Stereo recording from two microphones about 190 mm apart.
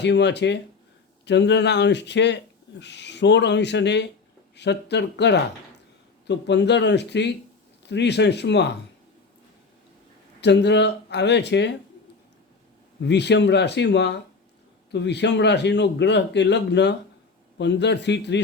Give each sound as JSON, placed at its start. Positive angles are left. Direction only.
{"t": 0.0, "sound": "speech", "side_deg": 65}
{"t": 10.4, "sound": "speech", "side_deg": 65}
{"t": 13.0, "sound": "speech", "side_deg": 65}